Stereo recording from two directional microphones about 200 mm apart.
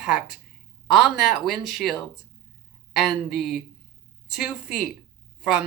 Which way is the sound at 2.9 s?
Centre (ahead or behind).